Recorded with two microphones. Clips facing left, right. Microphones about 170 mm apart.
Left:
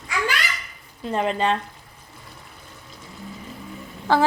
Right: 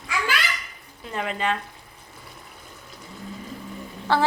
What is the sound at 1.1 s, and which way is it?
Speech, 30° left (ahead or behind).